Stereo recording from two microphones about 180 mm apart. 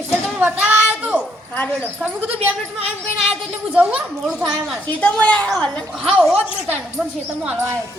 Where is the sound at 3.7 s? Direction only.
5° right (ahead or behind).